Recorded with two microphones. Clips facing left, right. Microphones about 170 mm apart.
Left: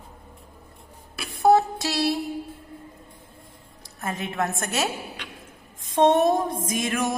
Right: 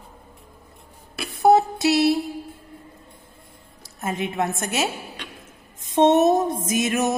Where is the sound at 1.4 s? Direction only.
20° right (ahead or behind).